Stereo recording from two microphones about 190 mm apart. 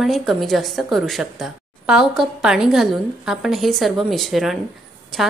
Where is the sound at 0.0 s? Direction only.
Centre (ahead or behind).